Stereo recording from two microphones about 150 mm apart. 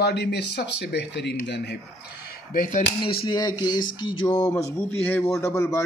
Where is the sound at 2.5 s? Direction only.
65° left (ahead or behind).